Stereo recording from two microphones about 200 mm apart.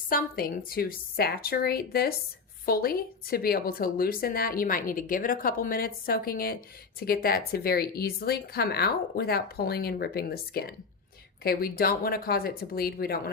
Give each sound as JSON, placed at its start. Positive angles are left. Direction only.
{"t": 0.1, "sound": "a woman's voice", "side_deg": 45}